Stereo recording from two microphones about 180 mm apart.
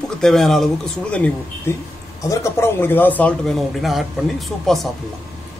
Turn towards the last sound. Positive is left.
turn(degrees=0)  # may be behind; listen again after turning